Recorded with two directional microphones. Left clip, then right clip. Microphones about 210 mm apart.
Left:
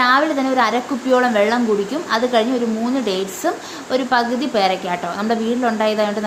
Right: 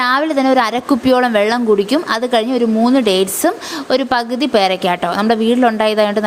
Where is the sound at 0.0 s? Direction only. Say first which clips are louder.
Right 1 dB; 45° right (ahead or behind).